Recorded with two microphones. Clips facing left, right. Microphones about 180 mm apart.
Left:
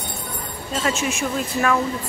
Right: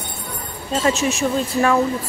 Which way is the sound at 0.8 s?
40° right (ahead or behind).